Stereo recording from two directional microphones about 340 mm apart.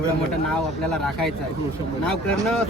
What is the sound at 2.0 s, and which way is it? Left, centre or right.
Speech, centre.